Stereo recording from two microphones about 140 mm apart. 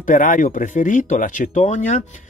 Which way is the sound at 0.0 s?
70° left (ahead or behind).